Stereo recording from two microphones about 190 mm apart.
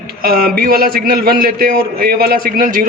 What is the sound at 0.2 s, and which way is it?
A man's voice, 50° right (ahead or behind).